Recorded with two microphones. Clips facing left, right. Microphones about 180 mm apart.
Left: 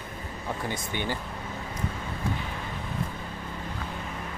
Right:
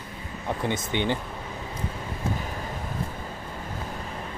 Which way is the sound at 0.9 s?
20° right (ahead or behind).